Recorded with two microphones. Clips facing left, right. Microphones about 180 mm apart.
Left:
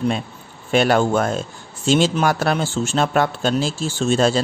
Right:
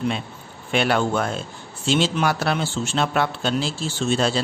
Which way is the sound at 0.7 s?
40° left (ahead or behind).